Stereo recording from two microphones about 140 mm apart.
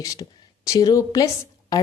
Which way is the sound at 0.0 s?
25° left (ahead or behind).